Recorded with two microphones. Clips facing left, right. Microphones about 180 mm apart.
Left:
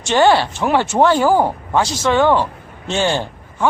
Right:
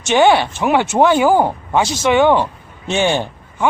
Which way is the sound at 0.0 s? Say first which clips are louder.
Right 1 dB; 20° right (ahead or behind).